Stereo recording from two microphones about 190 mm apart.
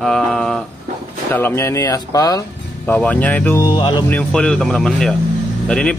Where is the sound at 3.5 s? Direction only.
25° left (ahead or behind).